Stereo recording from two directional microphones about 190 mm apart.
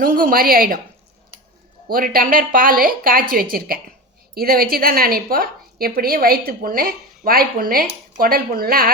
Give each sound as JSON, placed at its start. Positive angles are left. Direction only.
{"t": 0.0, "sound": "a woman's voice", "side_deg": -45}
{"t": 1.9, "sound": "a woman's voice", "side_deg": -50}